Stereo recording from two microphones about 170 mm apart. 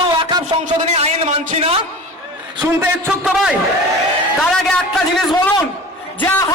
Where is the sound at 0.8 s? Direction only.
40° right (ahead or behind).